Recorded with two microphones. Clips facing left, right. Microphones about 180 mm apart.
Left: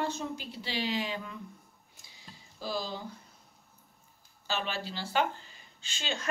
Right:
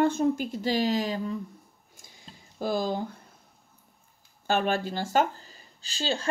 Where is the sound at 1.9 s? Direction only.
50° right (ahead or behind).